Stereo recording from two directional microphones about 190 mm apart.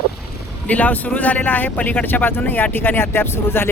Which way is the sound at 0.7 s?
10° left (ahead or behind).